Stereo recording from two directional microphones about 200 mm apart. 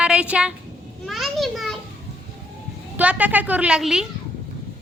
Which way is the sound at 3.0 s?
5° right (ahead or behind).